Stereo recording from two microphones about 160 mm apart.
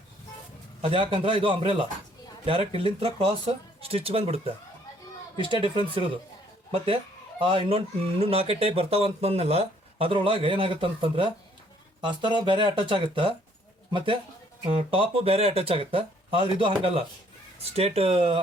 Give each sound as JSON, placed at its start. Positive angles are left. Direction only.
{"t": 0.8, "sound": "speech", "side_deg": -35}